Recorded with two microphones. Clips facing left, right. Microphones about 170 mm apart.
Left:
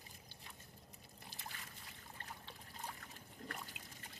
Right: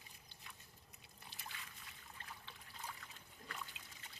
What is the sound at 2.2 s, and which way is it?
Trickle, 40° left (ahead or behind).